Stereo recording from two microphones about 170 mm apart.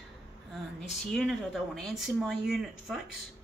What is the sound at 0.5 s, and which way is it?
Speech, centre (ahead or behind).